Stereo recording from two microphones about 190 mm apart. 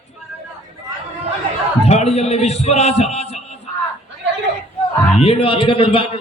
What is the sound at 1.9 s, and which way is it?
A man's voice, 35° left (ahead or behind).